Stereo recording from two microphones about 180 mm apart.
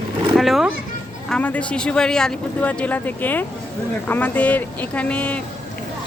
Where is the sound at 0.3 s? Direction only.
Centre (ahead or behind).